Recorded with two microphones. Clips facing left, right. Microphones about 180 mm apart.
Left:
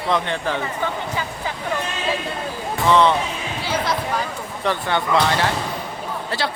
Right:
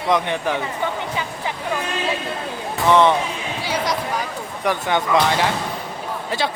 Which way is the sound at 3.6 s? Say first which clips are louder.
Even; 10° right (ahead or behind).